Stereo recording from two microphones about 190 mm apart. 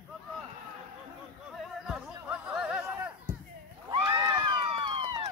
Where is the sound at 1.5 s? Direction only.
5° right (ahead or behind).